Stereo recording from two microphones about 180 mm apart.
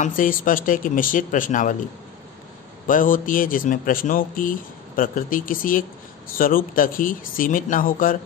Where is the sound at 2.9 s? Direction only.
50° left (ahead or behind).